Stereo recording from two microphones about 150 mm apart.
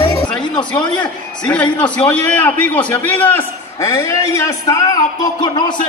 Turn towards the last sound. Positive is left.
turn(degrees=20)  # may be behind; listen again after turning